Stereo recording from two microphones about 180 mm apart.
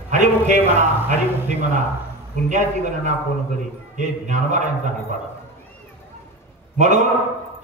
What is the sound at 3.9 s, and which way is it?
Speech, 40° right (ahead or behind).